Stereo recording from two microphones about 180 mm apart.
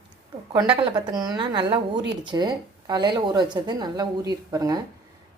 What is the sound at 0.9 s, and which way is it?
A woman's voice, 20° right (ahead or behind).